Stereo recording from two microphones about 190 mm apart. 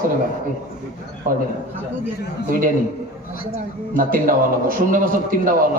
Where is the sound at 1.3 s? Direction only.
45° right (ahead or behind).